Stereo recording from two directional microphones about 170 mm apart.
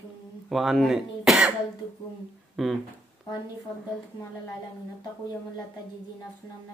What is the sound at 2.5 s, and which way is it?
Speech, centre (ahead or behind).